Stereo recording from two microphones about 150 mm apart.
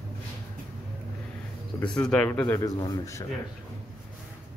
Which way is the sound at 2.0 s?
5° left (ahead or behind).